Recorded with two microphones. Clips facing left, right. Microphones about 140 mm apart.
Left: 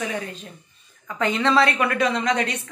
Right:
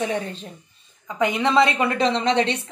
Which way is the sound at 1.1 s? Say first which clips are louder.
Right 1 dB; 15° right (ahead or behind).